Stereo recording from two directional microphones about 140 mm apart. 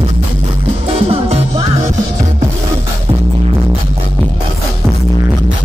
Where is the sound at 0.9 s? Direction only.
45° right (ahead or behind).